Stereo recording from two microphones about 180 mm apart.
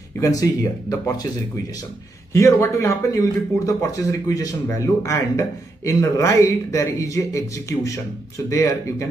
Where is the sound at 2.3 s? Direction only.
15° left (ahead or behind).